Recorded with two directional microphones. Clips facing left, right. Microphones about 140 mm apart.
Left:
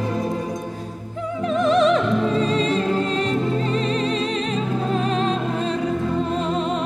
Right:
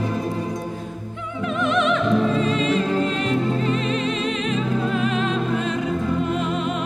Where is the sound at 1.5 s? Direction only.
35° left (ahead or behind).